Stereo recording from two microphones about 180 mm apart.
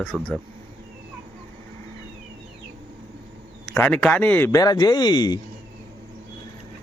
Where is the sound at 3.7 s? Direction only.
5° left (ahead or behind); by 5.3 s 25° left (ahead or behind).